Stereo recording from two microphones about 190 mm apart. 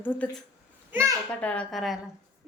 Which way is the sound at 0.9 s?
15° right (ahead or behind).